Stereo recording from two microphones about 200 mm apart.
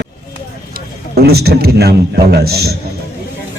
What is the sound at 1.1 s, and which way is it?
A man's voice, 50° right (ahead or behind).